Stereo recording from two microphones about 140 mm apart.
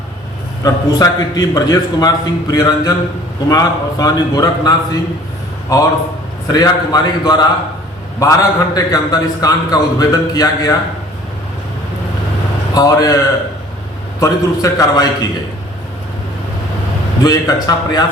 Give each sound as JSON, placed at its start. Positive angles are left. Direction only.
{"t": 0.6, "sound": "a man's voice", "side_deg": 25}
{"t": 12.7, "sound": "a man's voice", "side_deg": 25}
{"t": 17.2, "sound": "a man's voice", "side_deg": 25}